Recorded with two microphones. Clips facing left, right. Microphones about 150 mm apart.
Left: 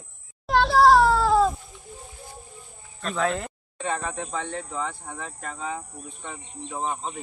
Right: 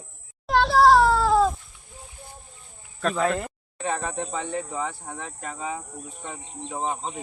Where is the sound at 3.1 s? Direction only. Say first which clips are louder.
Left 2 dB; centre (ahead or behind).